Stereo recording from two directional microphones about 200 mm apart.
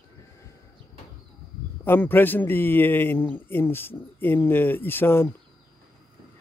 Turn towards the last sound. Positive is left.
turn(degrees=10)  # may be behind; listen again after turning